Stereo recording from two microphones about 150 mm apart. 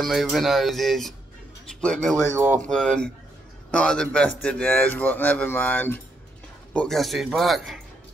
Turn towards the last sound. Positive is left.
turn(degrees=0)  # may be behind; listen again after turning